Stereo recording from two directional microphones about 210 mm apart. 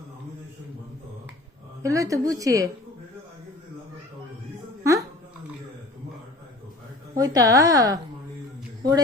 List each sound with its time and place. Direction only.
1.8 s a woman's voice: 15° right (ahead or behind)
4.8 s a sound: 15° right (ahead or behind)
7.2 s a woman's voice: 15° right (ahead or behind)